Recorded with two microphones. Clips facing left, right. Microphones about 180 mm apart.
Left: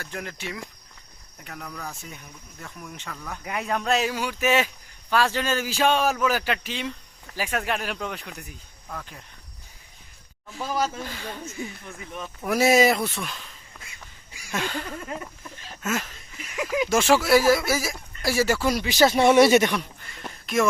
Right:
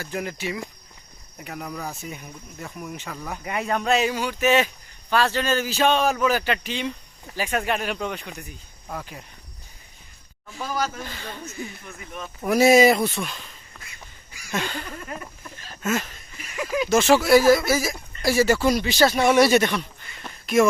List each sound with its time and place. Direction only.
0.0 s speech: 5° right (ahead or behind)
3.4 s speech: centre (ahead or behind)
8.9 s speech: 10° right (ahead or behind)
10.6 s speech: 25° left (ahead or behind)
11.0 s speech: 5° left (ahead or behind)
12.5 s speech: centre (ahead or behind)
14.5 s speech: centre (ahead or behind)
15.0 s speech: 20° left (ahead or behind)
15.8 s a sound: 5° left (ahead or behind)
16.7 s speech: 20° left (ahead or behind)
17.2 s speech: 5° left (ahead or behind)
19.1 s speech: 25° left (ahead or behind)